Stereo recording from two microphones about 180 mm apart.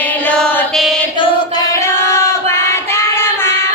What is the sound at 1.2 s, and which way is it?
Female singing, 30° left (ahead or behind).